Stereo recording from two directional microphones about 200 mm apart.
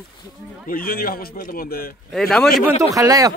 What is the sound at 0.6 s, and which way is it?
A man's voice, 45° left (ahead or behind).